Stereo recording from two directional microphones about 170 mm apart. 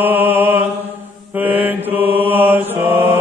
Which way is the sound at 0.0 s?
10° right (ahead or behind).